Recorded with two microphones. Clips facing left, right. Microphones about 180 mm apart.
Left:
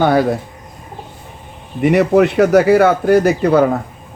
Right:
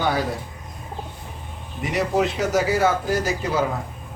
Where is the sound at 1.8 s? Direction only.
65° left (ahead or behind).